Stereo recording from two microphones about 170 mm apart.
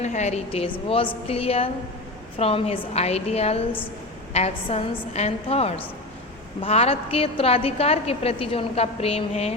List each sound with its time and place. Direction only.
0.0 s a woman's voice: 40° left (ahead or behind)